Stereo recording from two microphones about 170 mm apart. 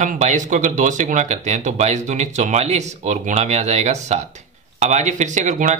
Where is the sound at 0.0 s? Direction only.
45° right (ahead or behind).